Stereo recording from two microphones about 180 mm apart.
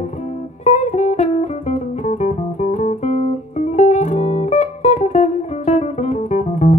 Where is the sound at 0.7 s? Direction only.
40° left (ahead or behind).